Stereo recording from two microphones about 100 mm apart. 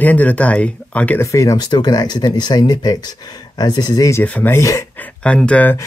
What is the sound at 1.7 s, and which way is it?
Speech, 45° left (ahead or behind).